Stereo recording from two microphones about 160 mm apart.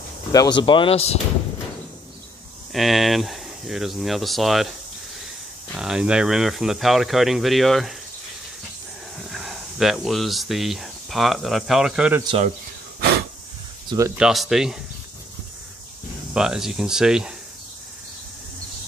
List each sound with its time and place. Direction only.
0.3 s speech: 25° left (ahead or behind)
2.7 s speech: centre (ahead or behind)
5.8 s speech: 5° right (ahead or behind)
9.3 s speech: centre (ahead or behind)
13.8 s speech: 20° right (ahead or behind)
14.1 s speech: 5° right (ahead or behind)
16.3 s speech: 5° right (ahead or behind)